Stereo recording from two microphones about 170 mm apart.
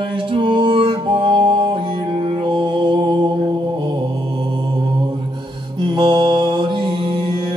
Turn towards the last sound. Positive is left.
turn(degrees=-30)  # may be behind; listen again after turning